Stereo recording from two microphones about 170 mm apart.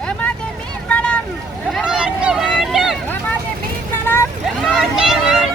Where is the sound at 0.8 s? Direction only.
5° left (ahead or behind).